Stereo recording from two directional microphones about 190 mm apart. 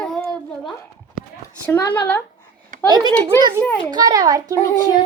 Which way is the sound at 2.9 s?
20° right (ahead or behind).